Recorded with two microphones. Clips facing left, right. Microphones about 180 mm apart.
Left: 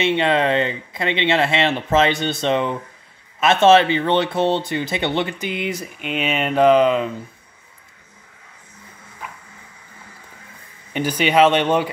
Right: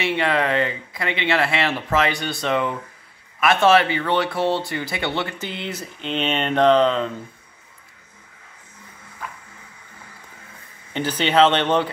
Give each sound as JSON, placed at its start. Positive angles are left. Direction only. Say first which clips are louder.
{"t": 0.0, "sound": "speech", "louder": "left 3 dB", "side_deg": 20}
{"t": 10.9, "sound": "speech", "louder": "left 2 dB", "side_deg": 10}